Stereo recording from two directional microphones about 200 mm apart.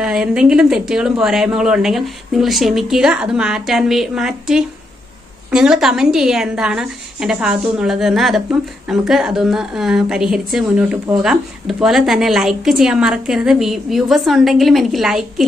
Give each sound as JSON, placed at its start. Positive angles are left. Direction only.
{"t": 0.0, "sound": "a woman's voice", "side_deg": -5}